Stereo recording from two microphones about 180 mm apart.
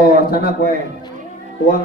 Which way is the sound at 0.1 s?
55° left (ahead or behind).